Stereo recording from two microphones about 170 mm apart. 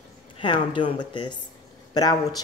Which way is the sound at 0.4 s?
30° left (ahead or behind).